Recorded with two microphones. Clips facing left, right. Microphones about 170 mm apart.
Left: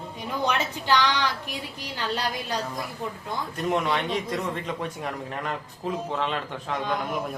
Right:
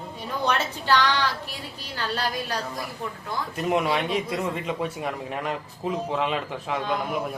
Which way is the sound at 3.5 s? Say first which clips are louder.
Right 2 dB; 5° right (ahead or behind).